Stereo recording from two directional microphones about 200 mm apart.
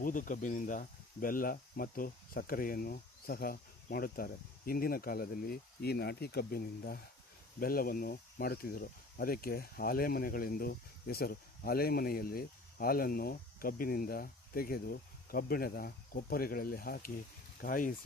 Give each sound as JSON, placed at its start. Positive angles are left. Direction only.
{"t": 0.0, "sound": "speech", "side_deg": 40}